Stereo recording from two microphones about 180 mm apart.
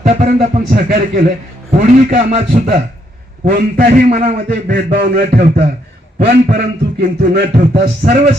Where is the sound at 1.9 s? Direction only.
40° right (ahead or behind).